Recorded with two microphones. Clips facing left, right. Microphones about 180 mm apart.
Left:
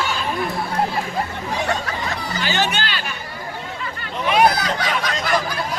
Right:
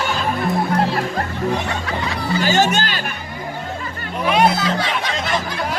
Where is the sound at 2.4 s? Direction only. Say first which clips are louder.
Right 5 dB; 45° right (ahead or behind).